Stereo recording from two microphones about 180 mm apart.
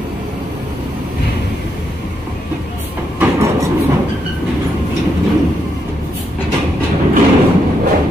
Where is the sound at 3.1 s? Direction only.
15° right (ahead or behind).